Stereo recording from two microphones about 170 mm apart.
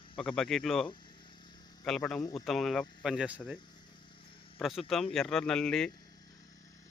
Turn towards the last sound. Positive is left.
turn(degrees=5)  # may be behind; listen again after turning